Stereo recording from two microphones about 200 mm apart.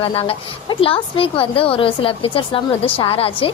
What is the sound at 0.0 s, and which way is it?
A woman's voice, 25° left (ahead or behind).